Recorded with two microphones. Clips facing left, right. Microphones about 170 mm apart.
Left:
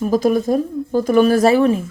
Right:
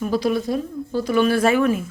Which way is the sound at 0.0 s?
45° left (ahead or behind).